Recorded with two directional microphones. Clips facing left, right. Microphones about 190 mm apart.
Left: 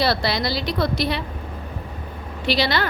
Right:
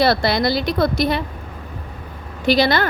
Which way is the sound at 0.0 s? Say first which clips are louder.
Right 5 dB; 50° right (ahead or behind).